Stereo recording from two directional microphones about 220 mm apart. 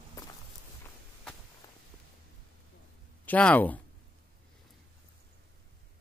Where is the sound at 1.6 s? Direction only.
15° left (ahead or behind).